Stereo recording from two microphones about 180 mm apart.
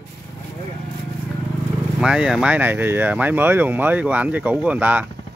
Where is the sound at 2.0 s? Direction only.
5° right (ahead or behind).